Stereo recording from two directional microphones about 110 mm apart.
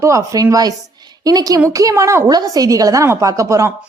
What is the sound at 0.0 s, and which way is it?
A woman's voice, 30° right (ahead or behind).